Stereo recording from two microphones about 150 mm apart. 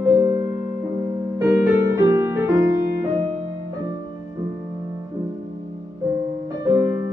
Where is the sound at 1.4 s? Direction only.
20° right (ahead or behind).